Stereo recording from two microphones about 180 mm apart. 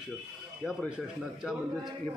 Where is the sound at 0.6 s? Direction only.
5° right (ahead or behind).